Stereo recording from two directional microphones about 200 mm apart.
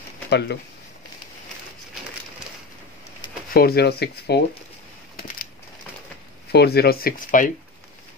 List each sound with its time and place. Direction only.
0.3 s speech: 55° left (ahead or behind)
3.5 s speech: 50° left (ahead or behind)
6.5 s speech: 55° left (ahead or behind)